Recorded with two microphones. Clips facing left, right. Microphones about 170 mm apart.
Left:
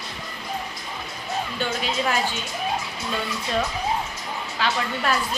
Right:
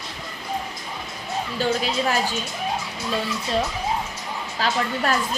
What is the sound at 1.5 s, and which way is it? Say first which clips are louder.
Speech: right 6 dB; 40° right (ahead or behind).